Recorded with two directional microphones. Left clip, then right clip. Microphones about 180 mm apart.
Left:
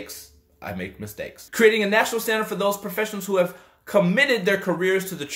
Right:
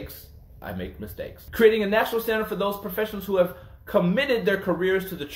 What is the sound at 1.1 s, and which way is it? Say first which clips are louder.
Speech: left 3 dB; 45° left (ahead or behind).